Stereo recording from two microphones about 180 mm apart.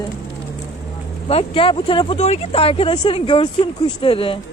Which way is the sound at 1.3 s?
30° left (ahead or behind).